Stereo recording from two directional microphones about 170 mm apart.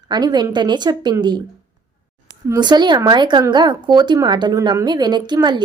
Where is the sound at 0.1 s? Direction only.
25° right (ahead or behind).